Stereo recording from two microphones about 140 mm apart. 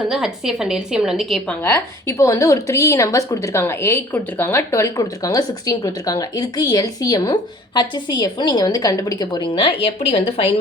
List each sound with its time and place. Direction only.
0.1 s a woman's voice: 5° right (ahead or behind)
1.6 s a woman's voice: 20° left (ahead or behind); by 10.5 s 45° left (ahead or behind)